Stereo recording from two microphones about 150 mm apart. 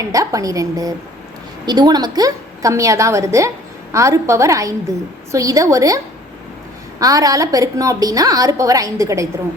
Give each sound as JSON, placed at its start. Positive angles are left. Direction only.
{"t": 0.0, "sound": "a woman's voice", "side_deg": -20}
{"t": 7.0, "sound": "a woman's voice", "side_deg": -20}